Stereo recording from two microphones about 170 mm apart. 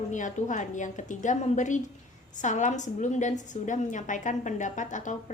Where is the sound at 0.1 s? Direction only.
45° left (ahead or behind).